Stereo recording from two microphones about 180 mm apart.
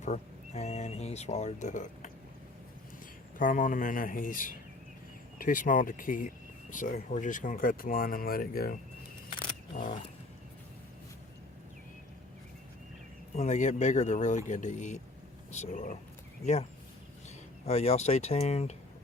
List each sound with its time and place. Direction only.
0.0 s speech: 40° left (ahead or behind)
3.3 s speech: 50° left (ahead or behind)
9.7 s speech: 45° left (ahead or behind)
13.3 s speech: 40° left (ahead or behind)
17.7 s speech: 35° left (ahead or behind)